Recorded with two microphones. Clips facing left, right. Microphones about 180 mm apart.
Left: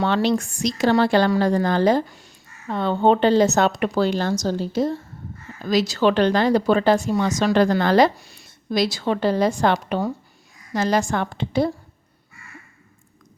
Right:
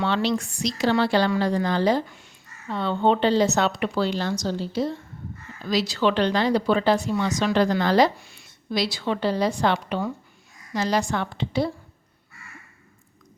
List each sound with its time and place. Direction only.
0.0 s speech: 50° left (ahead or behind)
8.2 s speech: 40° left (ahead or behind)